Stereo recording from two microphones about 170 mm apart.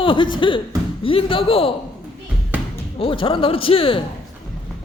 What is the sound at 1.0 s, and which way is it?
Speech, 35° left (ahead or behind).